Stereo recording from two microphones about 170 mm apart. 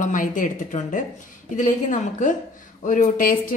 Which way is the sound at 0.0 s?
50° left (ahead or behind).